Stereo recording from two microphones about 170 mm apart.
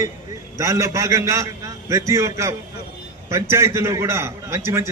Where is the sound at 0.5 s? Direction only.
20° right (ahead or behind).